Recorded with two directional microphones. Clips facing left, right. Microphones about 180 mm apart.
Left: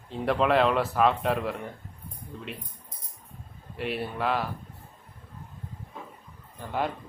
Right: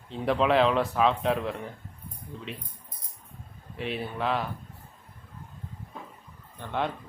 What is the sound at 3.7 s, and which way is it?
Speech, centre (ahead or behind).